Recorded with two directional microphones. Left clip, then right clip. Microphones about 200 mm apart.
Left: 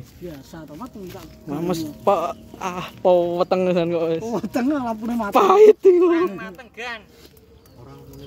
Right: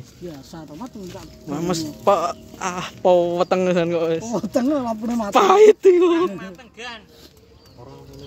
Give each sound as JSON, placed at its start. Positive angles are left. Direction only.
{"t": 0.5, "sound": "speech", "side_deg": -20}
{"t": 1.2, "sound": "speech", "side_deg": 0}
{"t": 4.3, "sound": "speech", "side_deg": -25}
{"t": 5.3, "sound": "speech", "side_deg": 0}
{"t": 6.3, "sound": "speech", "side_deg": 25}